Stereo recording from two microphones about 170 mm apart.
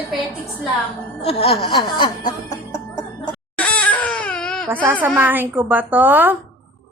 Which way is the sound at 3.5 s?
5° left (ahead or behind).